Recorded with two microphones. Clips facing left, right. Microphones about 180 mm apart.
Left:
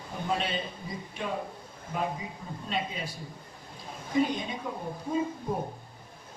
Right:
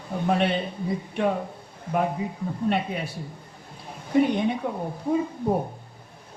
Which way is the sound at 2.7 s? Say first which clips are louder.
Right 6 dB; 65° right (ahead or behind).